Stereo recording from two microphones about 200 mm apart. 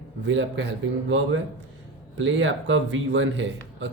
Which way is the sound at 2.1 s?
70° right (ahead or behind).